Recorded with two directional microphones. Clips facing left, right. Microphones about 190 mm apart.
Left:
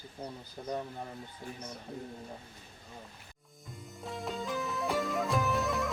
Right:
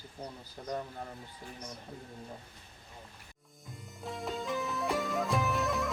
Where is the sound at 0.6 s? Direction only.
15° left (ahead or behind).